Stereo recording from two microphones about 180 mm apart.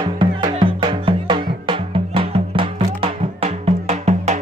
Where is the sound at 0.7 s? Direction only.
25° right (ahead or behind).